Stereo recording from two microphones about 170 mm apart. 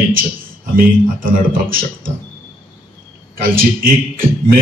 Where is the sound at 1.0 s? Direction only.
50° right (ahead or behind).